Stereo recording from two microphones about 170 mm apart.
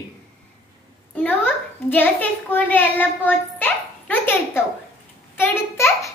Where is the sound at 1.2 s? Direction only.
10° left (ahead or behind).